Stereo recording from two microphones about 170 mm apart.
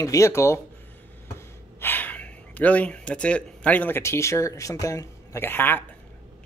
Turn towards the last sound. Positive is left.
turn(degrees=10)  # may be behind; listen again after turning